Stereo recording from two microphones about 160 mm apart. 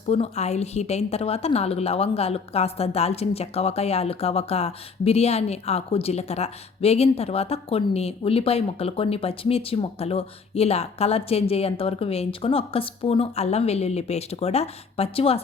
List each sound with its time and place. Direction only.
0.1 s a woman's voice: 40° left (ahead or behind)